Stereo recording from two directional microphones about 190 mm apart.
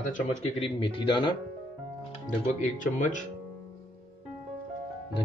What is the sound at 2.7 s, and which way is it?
Speech, 40° left (ahead or behind).